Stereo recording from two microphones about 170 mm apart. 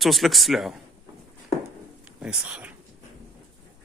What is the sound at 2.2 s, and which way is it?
Speech, 5° right (ahead or behind).